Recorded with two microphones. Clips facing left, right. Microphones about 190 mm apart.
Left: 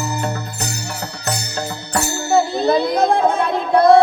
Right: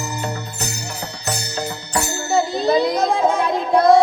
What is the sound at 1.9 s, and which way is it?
Music, 60° left (ahead or behind).